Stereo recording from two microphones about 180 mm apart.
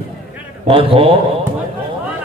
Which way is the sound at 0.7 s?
30° right (ahead or behind).